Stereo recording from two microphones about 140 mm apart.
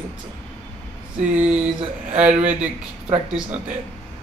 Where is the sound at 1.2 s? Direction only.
10° right (ahead or behind).